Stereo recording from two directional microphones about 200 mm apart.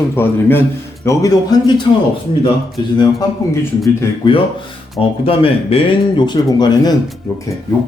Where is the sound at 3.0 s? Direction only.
15° left (ahead or behind).